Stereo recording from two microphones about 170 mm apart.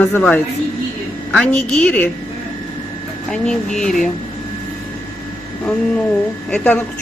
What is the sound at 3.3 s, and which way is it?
Speech, 5° left (ahead or behind).